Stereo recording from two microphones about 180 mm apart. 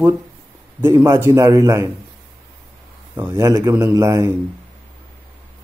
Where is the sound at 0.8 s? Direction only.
15° right (ahead or behind).